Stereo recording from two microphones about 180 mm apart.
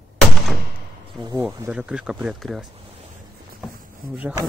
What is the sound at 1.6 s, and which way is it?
Speech, 5° right (ahead or behind).